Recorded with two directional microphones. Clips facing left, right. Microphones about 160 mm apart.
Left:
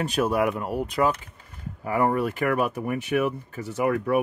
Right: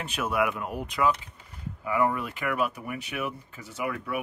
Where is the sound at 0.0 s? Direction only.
35° left (ahead or behind).